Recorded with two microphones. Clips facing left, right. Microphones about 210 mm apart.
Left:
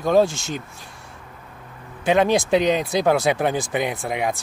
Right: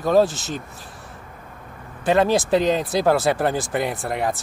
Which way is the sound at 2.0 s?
5° right (ahead or behind).